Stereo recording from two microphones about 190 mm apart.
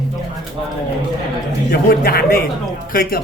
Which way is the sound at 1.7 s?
55° left (ahead or behind).